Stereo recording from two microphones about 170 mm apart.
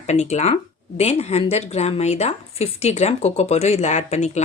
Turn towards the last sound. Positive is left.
turn(degrees=40)  # may be behind; listen again after turning